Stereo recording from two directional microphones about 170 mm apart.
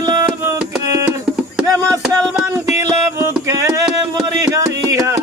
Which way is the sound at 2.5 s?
15° right (ahead or behind).